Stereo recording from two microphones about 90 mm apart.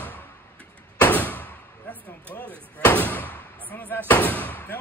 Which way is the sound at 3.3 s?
15° left (ahead or behind).